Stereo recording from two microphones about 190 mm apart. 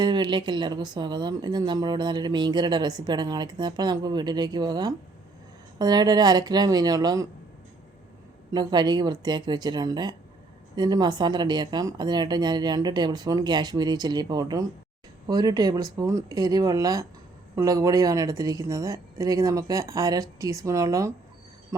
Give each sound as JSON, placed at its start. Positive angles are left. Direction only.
{"t": 0.0, "sound": "speech", "side_deg": -25}
{"t": 8.5, "sound": "speech", "side_deg": -20}
{"t": 21.7, "sound": "a sound", "side_deg": -15}